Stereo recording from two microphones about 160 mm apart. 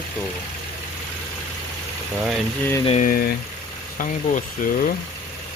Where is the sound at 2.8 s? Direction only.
40° left (ahead or behind).